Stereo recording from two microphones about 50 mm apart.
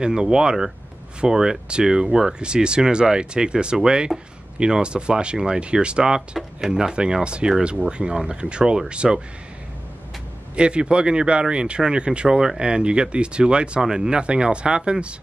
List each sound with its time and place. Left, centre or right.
0.0 s speech: centre
10.5 s speech: right